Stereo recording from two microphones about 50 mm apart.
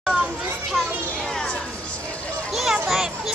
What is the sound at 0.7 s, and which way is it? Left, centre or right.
Children playing, centre.